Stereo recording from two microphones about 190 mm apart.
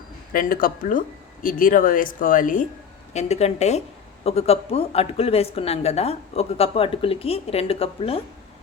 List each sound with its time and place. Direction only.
0.3 s speech: 50° left (ahead or behind); by 8.2 s 30° left (ahead or behind)